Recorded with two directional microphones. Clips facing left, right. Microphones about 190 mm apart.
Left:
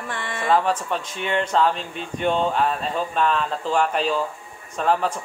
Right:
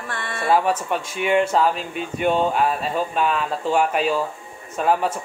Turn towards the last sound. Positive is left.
turn(degrees=-10)  # may be behind; listen again after turning